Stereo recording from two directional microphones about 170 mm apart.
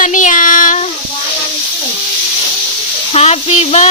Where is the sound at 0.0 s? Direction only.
50° left (ahead or behind).